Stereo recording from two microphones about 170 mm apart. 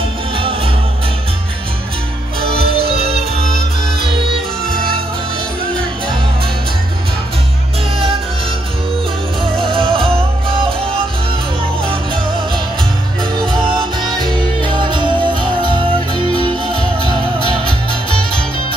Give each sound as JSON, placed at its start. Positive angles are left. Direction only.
{"t": 2.8, "sound": "music", "side_deg": -70}
{"t": 9.4, "sound": "music", "side_deg": -30}
{"t": 14.0, "sound": "music", "side_deg": -25}